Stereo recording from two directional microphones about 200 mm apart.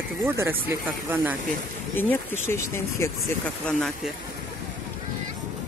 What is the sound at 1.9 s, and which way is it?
Speech, 10° left (ahead or behind).